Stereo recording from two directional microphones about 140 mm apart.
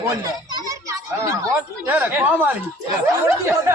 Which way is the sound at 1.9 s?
10° right (ahead or behind).